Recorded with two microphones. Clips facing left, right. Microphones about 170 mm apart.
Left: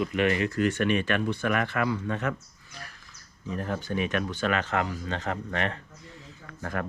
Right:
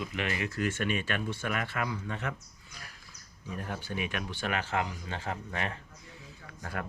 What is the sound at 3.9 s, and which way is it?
Speech, 65° left (ahead or behind).